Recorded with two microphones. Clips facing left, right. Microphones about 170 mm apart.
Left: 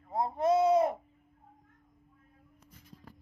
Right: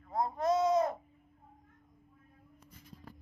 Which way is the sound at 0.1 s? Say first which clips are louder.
Left 3 dB; 25° left (ahead or behind).